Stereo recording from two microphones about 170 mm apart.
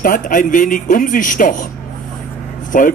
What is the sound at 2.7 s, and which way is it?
Speech, 55° left (ahead or behind).